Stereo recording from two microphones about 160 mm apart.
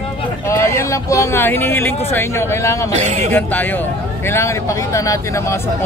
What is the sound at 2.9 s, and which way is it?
Speech, 45° right (ahead or behind).